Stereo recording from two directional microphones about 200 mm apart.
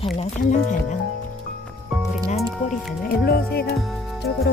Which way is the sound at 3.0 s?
50° left (ahead or behind).